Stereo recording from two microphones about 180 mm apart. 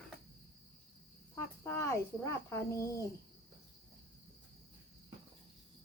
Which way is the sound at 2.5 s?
15° left (ahead or behind).